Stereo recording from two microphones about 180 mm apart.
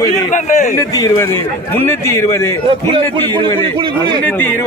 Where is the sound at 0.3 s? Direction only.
45° left (ahead or behind).